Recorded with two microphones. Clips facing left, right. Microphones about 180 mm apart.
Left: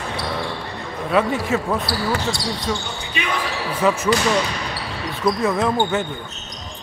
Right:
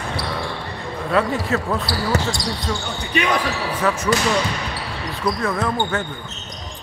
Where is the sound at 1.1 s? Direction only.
5° left (ahead or behind).